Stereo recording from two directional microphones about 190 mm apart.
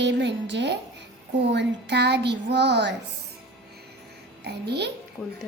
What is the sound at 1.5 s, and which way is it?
Music, 65° right (ahead or behind).